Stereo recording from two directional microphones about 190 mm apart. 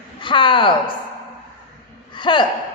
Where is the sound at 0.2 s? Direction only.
25° left (ahead or behind).